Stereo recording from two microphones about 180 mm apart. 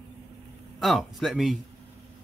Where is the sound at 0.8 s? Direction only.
Centre (ahead or behind).